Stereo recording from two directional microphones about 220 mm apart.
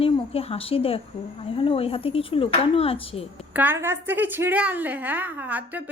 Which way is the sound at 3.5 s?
10° right (ahead or behind).